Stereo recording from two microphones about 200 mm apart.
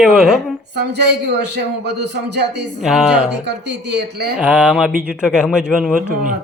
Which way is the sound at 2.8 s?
5° right (ahead or behind).